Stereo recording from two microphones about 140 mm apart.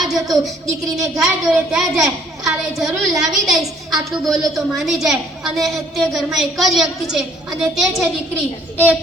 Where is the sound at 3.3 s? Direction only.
Centre (ahead or behind).